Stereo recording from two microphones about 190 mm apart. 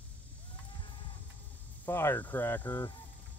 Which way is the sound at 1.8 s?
10° left (ahead or behind).